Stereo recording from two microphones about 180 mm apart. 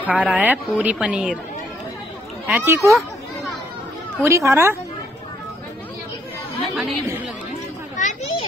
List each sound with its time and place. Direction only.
0.1 s a woman's voice: 10° right (ahead or behind)
2.4 s a woman's voice: 10° right (ahead or behind)
4.2 s a woman's voice: 15° right (ahead or behind)
6.7 s a woman's voice: centre (ahead or behind)
8.0 s children playing: 45° left (ahead or behind)